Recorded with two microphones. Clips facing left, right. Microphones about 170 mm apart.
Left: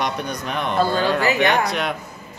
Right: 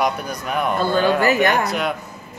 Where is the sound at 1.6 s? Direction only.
5° right (ahead or behind).